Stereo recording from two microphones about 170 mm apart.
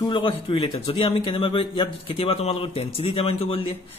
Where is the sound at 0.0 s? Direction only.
30° left (ahead or behind).